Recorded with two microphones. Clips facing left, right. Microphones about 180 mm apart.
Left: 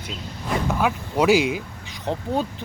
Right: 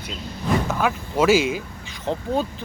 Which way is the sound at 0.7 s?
10° left (ahead or behind).